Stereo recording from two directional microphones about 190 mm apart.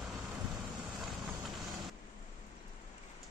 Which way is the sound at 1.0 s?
Centre (ahead or behind).